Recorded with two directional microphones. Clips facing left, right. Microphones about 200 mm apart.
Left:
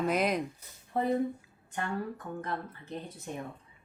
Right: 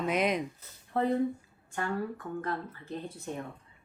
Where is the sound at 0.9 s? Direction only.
15° left (ahead or behind).